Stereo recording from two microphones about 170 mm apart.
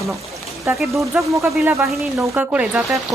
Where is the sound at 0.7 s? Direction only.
5° right (ahead or behind).